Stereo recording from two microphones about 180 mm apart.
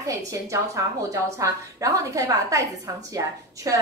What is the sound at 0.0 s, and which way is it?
A woman's voice, 15° right (ahead or behind).